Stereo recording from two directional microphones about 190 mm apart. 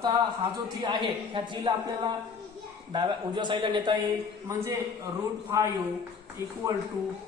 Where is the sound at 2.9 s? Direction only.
25° right (ahead or behind).